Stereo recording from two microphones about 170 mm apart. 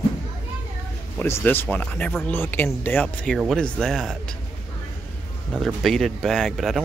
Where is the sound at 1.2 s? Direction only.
10° left (ahead or behind).